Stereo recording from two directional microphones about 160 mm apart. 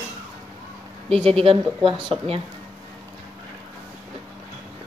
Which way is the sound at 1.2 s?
35° right (ahead or behind).